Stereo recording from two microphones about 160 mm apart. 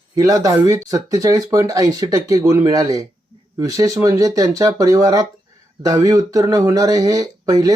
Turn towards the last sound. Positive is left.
turn(degrees=-20)  # may be behind; listen again after turning